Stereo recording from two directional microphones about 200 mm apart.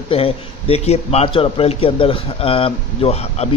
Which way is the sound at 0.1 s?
30° left (ahead or behind).